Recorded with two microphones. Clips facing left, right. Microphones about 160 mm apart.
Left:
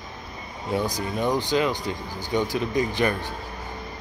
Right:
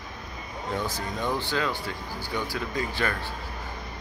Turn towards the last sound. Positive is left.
turn(degrees=15)  # may be behind; listen again after turning